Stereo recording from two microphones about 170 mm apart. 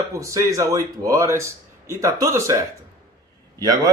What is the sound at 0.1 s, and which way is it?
A man's voice, 20° right (ahead or behind).